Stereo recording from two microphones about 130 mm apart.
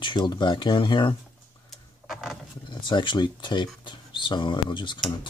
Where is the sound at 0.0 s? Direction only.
35° left (ahead or behind).